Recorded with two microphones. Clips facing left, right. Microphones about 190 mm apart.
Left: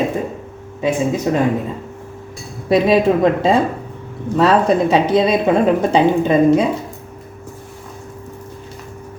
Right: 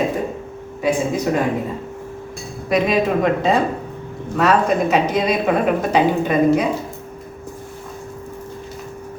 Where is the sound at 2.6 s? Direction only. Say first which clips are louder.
Left 5 dB; 30° left (ahead or behind).